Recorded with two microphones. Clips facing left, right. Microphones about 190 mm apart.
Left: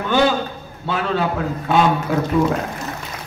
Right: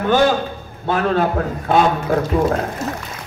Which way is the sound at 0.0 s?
50° right (ahead or behind).